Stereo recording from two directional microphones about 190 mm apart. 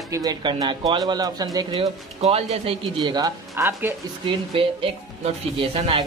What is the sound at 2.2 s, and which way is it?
Speech, 30° right (ahead or behind).